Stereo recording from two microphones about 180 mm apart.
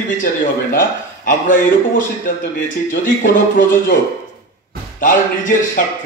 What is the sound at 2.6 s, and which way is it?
Speech, 50° left (ahead or behind).